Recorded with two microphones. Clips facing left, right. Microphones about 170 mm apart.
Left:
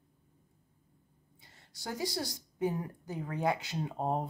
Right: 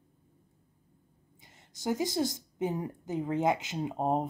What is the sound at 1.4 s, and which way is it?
A woman's voice, 20° right (ahead or behind).